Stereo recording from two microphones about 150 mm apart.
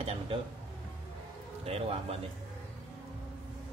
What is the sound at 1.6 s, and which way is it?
Speech, 40° right (ahead or behind).